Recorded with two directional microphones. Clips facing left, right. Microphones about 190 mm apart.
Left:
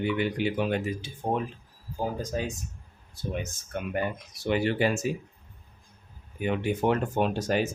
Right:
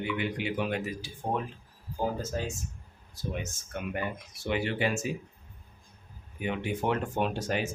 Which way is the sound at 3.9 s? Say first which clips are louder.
Left 4 dB; 40° left (ahead or behind).